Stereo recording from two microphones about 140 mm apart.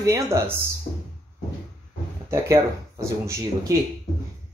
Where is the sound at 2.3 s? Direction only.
20° right (ahead or behind).